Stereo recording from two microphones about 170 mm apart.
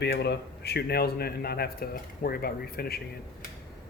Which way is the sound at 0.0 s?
75° left (ahead or behind).